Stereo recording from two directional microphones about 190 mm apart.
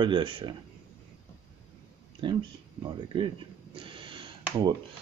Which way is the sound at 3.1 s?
25° right (ahead or behind).